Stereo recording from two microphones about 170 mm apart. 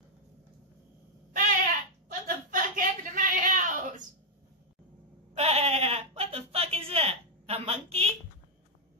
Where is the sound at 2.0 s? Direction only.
55° right (ahead or behind).